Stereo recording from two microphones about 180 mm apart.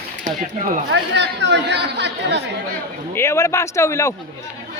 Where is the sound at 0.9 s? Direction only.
75° right (ahead or behind).